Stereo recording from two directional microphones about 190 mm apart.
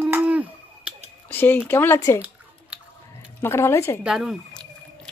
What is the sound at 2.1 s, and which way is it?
Chewing, 5° right (ahead or behind).